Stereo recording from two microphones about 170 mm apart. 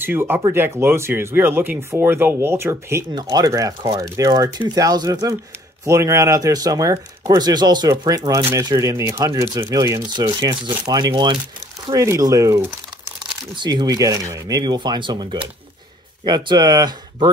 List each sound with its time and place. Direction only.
0.0 s speech: 10° right (ahead or behind)
16.3 s speech: 25° right (ahead or behind)